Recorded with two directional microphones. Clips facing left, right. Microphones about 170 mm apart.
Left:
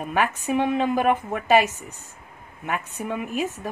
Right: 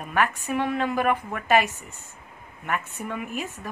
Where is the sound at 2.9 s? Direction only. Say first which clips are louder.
Left 3 dB; 15° left (ahead or behind).